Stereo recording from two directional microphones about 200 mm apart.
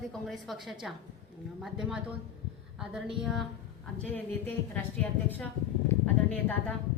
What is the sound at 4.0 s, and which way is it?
A man's voice, 10° left (ahead or behind).